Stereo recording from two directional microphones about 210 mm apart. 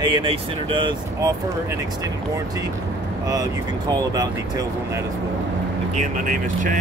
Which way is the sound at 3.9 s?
15° right (ahead or behind).